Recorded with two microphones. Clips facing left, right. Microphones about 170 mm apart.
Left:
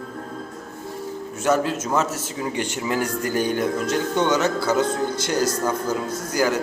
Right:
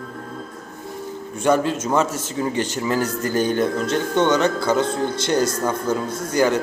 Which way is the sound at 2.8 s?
15° left (ahead or behind).